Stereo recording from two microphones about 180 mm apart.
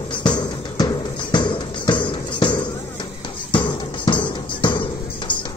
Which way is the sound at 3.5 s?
25° left (ahead or behind).